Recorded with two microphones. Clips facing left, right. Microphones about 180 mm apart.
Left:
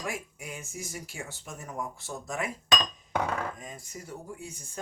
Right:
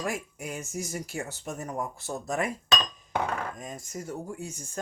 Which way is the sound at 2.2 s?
40° right (ahead or behind).